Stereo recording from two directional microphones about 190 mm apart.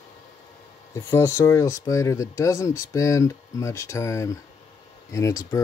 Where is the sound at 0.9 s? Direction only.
15° left (ahead or behind).